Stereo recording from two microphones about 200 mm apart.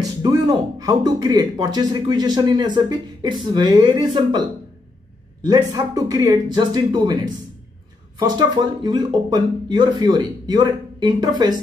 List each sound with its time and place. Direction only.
0.2 s speech: 20° right (ahead or behind)
5.4 s speech: 20° right (ahead or behind)
8.2 s speech: 20° right (ahead or behind)